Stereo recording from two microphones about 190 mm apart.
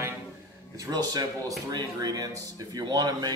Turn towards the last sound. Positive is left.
turn(degrees=-20)  # may be behind; listen again after turning